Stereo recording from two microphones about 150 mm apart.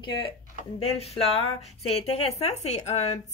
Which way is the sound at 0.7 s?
45° left (ahead or behind).